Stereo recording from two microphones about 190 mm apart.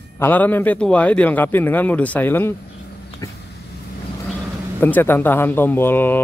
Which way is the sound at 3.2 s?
15° left (ahead or behind).